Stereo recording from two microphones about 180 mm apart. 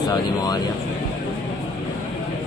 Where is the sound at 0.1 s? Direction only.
20° left (ahead or behind).